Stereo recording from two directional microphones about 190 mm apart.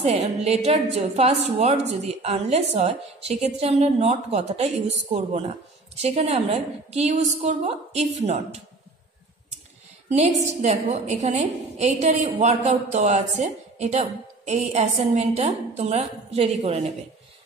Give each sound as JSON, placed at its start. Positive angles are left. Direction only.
{"t": 0.0, "sound": "a woman's voice", "side_deg": -35}
{"t": 10.0, "sound": "a woman's voice", "side_deg": -35}